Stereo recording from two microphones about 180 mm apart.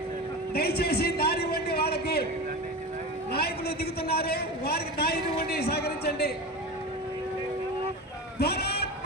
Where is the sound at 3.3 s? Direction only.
60° left (ahead or behind).